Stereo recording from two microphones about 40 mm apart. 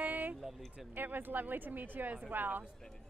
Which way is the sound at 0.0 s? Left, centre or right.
Right.